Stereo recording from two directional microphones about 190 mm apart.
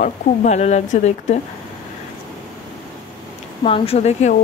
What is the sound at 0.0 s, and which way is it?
Speech, 35° left (ahead or behind).